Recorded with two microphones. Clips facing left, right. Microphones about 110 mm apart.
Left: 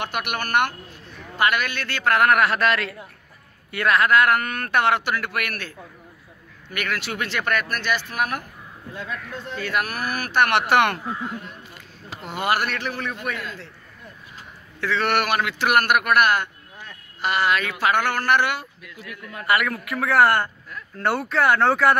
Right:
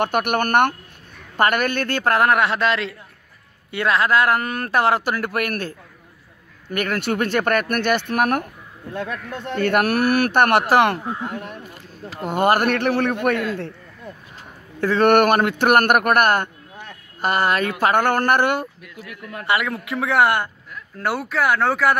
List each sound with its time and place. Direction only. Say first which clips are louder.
0.0 s speech: right 8 dB; 50° right (ahead or behind)
2.1 s a man's voice: even; 25° right (ahead or behind); by 10.4 s 65° right (ahead or behind)
10.4 s speech: right 1 dB; 45° right (ahead or behind)
11.2 s a man's voice: right 3 dB; 65° right (ahead or behind)
12.2 s a man's voice: right 6 dB; 50° right (ahead or behind); by 13.7 s 65° right (ahead or behind)
14.8 s a man's voice: right 8 dB; 45° right (ahead or behind)
19.4 s speech: even; 25° right (ahead or behind)
21.0 s speech: left 1 dB; 5° right (ahead or behind)